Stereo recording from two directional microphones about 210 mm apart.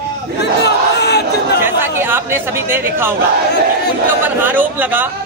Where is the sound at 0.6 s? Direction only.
50° left (ahead or behind).